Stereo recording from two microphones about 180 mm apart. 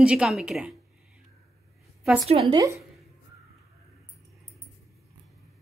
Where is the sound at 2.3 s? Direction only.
35° right (ahead or behind).